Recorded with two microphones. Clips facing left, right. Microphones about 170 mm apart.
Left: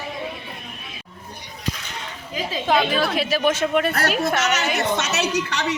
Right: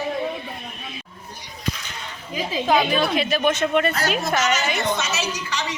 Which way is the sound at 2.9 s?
5° left (ahead or behind).